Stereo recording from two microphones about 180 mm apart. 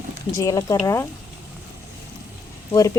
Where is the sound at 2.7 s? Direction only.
20° left (ahead or behind).